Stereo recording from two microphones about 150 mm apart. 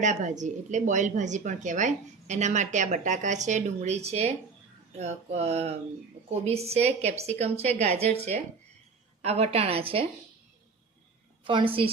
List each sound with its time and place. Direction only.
0.0 s a woman's voice: 55° right (ahead or behind)
9.2 s a woman's voice: 45° right (ahead or behind)
11.4 s a woman's voice: 35° right (ahead or behind)